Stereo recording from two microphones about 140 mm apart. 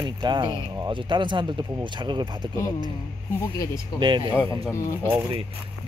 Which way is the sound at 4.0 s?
35° right (ahead or behind).